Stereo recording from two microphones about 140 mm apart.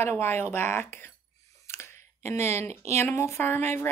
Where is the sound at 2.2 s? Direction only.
20° left (ahead or behind).